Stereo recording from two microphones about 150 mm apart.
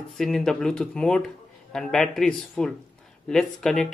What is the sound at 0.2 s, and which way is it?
Speech, 5° left (ahead or behind).